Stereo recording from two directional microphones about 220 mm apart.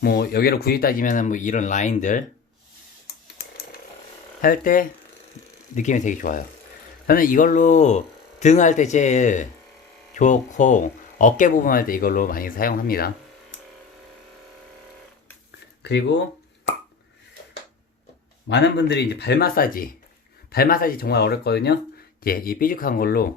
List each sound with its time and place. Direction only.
0.0 s speech: 45° left (ahead or behind)
4.4 s speech: 40° left (ahead or behind)
15.8 s speech: 50° left (ahead or behind)
18.4 s speech: 50° left (ahead or behind)